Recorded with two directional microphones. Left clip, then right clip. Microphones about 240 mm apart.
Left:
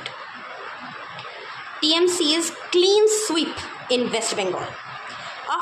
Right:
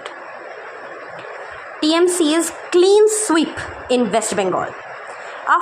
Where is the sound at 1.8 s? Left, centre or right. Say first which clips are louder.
Right 4 dB; right.